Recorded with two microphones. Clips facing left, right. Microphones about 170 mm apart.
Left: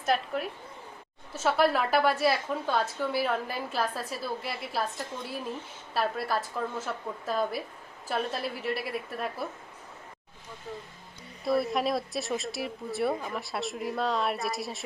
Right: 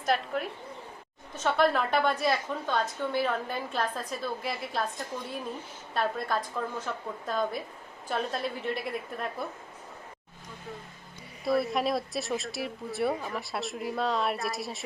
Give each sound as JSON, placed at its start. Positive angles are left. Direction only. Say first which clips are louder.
{"t": 0.0, "sound": "a woman's voice", "louder": "even", "side_deg": 0}
{"t": 5.9, "sound": "a woman's voice", "louder": "even", "side_deg": 5}
{"t": 11.4, "sound": "a woman's voice", "louder": "even", "side_deg": 0}